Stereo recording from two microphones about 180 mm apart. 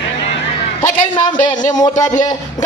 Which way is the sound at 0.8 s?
25° left (ahead or behind).